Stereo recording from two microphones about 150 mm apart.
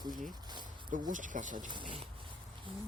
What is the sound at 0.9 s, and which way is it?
Speech, 60° right (ahead or behind).